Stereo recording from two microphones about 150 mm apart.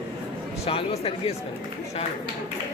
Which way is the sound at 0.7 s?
40° left (ahead or behind).